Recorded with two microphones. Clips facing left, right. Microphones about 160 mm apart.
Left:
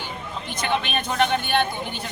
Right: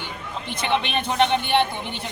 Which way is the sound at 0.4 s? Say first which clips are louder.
Right 2 dB; 25° right (ahead or behind).